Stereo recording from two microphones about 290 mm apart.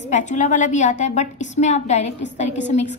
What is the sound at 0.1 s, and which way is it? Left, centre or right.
A woman's voice, left.